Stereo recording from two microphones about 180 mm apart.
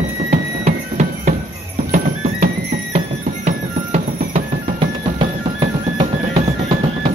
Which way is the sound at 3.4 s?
40° right (ahead or behind).